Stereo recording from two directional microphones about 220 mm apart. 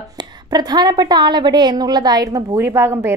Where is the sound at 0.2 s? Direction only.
20° right (ahead or behind).